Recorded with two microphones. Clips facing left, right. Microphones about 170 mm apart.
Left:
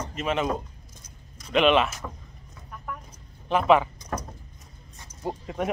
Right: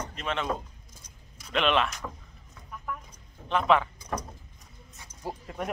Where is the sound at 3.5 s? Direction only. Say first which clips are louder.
Left 4 dB; 5° left (ahead or behind).